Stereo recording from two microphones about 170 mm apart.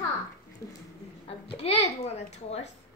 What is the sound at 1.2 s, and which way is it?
A woman's voice, 35° left (ahead or behind).